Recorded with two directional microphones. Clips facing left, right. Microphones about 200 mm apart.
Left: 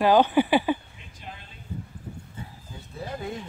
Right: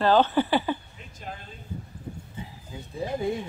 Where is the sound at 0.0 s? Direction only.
15° left (ahead or behind).